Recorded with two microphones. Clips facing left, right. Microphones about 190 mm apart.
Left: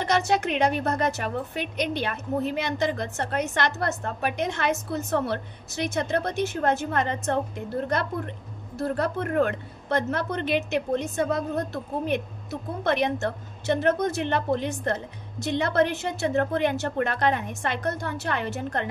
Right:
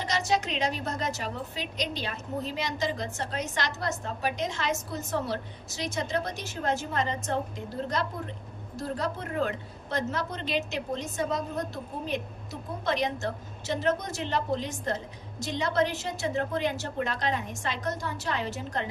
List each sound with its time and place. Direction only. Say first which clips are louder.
0.0 s a woman's voice: left 5 dB; 60° left (ahead or behind)